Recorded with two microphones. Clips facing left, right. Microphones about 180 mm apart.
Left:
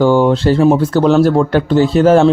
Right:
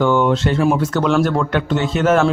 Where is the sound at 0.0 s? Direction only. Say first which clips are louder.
Left 5 dB; 35° left (ahead or behind).